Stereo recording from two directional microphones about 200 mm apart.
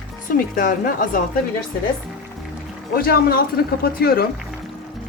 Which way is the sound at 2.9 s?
50° left (ahead or behind).